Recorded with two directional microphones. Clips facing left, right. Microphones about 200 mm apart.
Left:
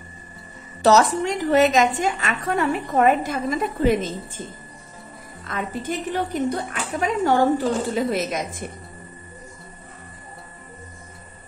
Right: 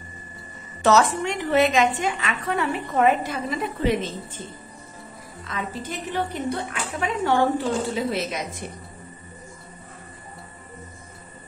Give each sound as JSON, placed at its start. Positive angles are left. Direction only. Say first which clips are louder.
{"t": 0.8, "sound": "a woman's voice", "louder": "left 2 dB", "side_deg": 40}
{"t": 5.4, "sound": "a woman's voice", "louder": "left 3 dB", "side_deg": 50}